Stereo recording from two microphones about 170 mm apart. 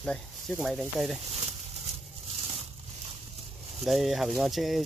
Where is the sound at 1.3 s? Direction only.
40° right (ahead or behind).